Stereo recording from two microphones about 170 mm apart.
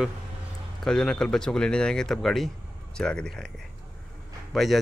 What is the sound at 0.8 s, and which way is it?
Speech, 5° left (ahead or behind).